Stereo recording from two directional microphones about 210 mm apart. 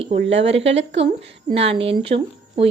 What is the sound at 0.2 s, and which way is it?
Speech, 60° right (ahead or behind).